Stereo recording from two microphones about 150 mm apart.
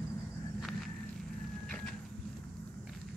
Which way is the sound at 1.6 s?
5° left (ahead or behind).